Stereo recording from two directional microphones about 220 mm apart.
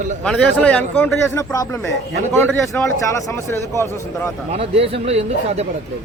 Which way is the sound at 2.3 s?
10° left (ahead or behind).